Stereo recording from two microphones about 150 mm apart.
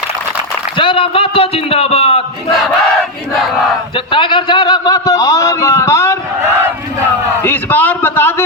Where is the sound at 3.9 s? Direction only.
35° left (ahead or behind); by 6.1 s 20° left (ahead or behind).